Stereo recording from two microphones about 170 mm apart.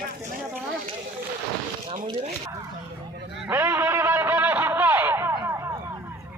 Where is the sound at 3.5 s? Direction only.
15° right (ahead or behind).